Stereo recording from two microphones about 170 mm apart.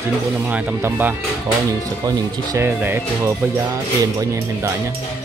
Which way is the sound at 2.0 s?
20° right (ahead or behind).